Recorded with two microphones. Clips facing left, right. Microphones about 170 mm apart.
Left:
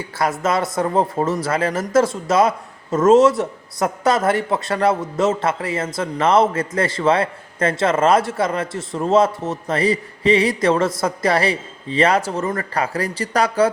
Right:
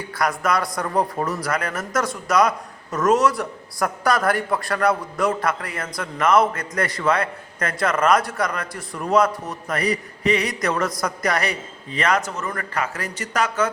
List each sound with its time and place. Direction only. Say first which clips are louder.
0.1 s a man's voice: left 2 dB; 25° left (ahead or behind)